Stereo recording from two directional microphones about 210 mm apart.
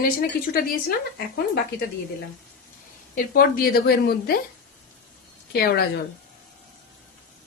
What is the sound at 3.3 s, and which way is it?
Speech, 45° left (ahead or behind).